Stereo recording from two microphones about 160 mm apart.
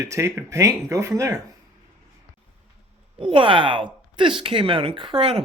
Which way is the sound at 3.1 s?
35° right (ahead or behind).